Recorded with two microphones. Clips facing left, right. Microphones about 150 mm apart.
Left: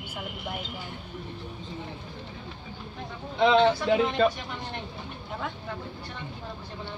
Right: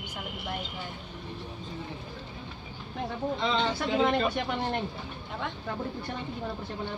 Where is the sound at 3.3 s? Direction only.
65° left (ahead or behind).